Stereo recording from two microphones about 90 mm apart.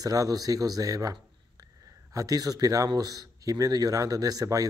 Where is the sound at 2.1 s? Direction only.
40° right (ahead or behind).